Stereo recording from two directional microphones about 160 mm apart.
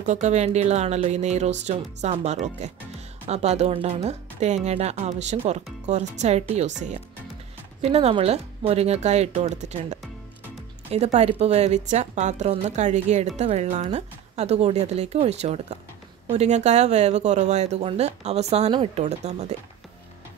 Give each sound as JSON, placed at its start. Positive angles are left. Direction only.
{"t": 0.0, "sound": "speech", "side_deg": -45}
{"t": 7.8, "sound": "speech", "side_deg": -40}